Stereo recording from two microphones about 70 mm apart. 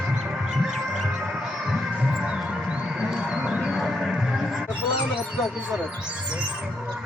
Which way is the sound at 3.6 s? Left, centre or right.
Centre.